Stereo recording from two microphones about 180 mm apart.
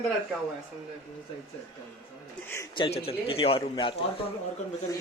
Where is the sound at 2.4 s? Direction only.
15° left (ahead or behind).